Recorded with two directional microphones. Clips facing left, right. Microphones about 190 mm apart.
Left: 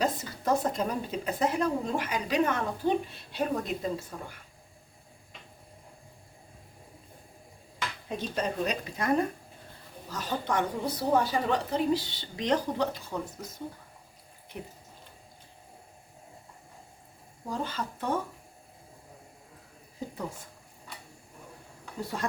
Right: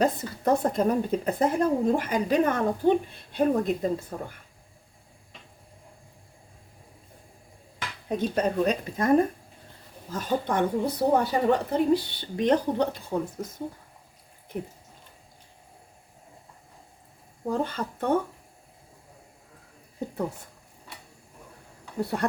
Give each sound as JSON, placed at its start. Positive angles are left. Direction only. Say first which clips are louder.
{"t": 0.0, "sound": "a woman's voice", "louder": "right 5 dB", "side_deg": -60}
{"t": 8.1, "sound": "a woman's voice", "louder": "right 7 dB", "side_deg": -55}
{"t": 13.1, "sound": "speech", "louder": "right 6 dB", "side_deg": -35}
{"t": 17.5, "sound": "speech", "louder": "right 5 dB", "side_deg": -60}
{"t": 20.0, "sound": "a sound", "louder": "right 4 dB", "side_deg": -60}
{"t": 22.2, "sound": "speech", "louder": "right 6 dB", "side_deg": -65}